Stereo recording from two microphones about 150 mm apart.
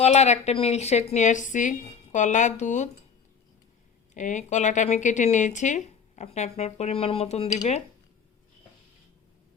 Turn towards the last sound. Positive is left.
turn(degrees=50)  # may be behind; listen again after turning